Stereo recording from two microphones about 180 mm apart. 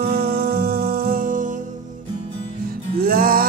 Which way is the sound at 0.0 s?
55° right (ahead or behind).